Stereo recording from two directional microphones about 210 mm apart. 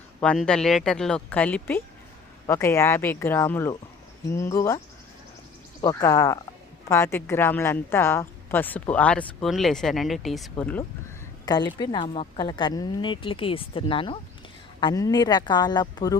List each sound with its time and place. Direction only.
0.2 s a woman's voice: 5° left (ahead or behind)
5.8 s a woman's voice: 15° left (ahead or behind)
11.4 s a woman's voice: 20° left (ahead or behind)